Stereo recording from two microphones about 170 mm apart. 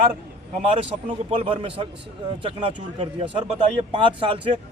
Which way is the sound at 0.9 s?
30° right (ahead or behind).